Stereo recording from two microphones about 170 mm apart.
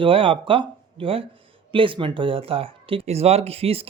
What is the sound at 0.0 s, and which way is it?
Speech, 30° right (ahead or behind).